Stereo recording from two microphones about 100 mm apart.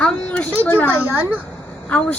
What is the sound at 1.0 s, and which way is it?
Speech, 20° right (ahead or behind).